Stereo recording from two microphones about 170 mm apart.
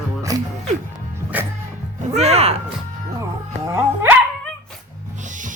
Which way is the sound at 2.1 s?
40° right (ahead or behind).